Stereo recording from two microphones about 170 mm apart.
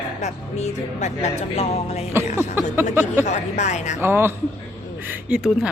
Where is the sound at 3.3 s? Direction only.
40° left (ahead or behind).